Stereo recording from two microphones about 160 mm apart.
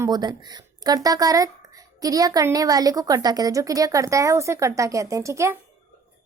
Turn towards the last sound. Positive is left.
turn(degrees=-20)  # may be behind; listen again after turning